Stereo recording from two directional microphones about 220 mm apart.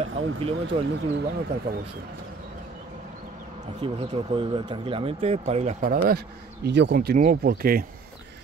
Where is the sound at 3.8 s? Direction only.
25° right (ahead or behind).